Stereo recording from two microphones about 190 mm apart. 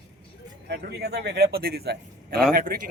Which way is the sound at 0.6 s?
60° right (ahead or behind).